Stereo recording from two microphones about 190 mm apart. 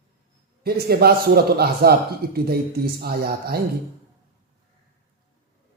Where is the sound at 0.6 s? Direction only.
55° right (ahead or behind).